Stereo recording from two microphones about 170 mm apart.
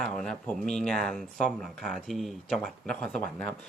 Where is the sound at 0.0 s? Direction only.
5° left (ahead or behind).